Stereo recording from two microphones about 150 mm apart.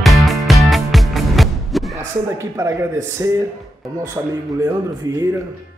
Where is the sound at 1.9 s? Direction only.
20° right (ahead or behind).